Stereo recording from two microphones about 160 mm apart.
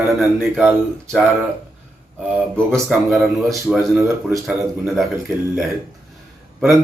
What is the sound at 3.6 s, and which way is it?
Speech, 10° right (ahead or behind).